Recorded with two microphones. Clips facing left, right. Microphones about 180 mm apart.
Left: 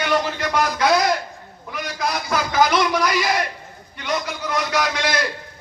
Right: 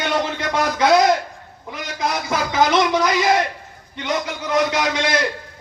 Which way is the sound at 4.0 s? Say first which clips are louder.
Right 1 dB; 25° right (ahead or behind).